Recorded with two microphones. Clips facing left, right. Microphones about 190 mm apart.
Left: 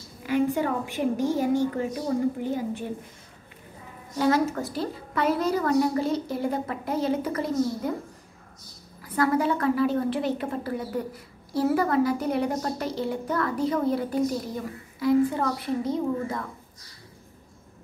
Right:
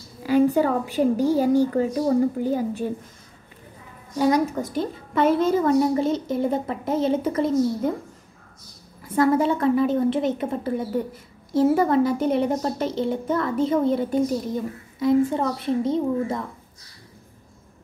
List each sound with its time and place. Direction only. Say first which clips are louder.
0.2 s a woman's voice: right 6 dB; 35° right (ahead or behind)
4.2 s a child's voice: right 3 dB; 15° right (ahead or behind)
9.0 s a child's voice: right 4 dB; 25° right (ahead or behind)